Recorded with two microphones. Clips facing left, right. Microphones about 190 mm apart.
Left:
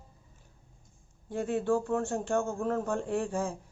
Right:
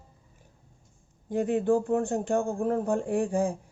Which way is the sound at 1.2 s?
15° right (ahead or behind).